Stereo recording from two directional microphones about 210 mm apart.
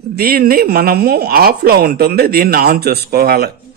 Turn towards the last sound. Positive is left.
turn(degrees=-45)  # may be behind; listen again after turning